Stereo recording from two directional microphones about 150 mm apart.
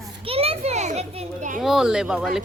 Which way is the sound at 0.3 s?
40° right (ahead or behind).